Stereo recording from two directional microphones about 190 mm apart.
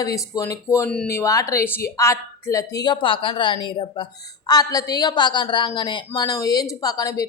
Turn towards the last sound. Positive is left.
turn(degrees=20)  # may be behind; listen again after turning